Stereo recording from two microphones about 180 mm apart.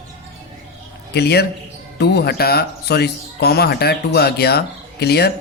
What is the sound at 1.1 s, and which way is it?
Speech, 65° left (ahead or behind).